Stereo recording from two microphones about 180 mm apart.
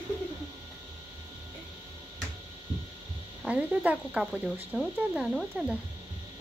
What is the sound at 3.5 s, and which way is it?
Speech, 5° right (ahead or behind).